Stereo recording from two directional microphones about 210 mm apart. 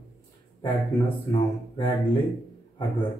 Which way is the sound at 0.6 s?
20° left (ahead or behind).